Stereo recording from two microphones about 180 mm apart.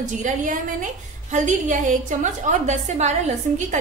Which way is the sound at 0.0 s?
45° right (ahead or behind).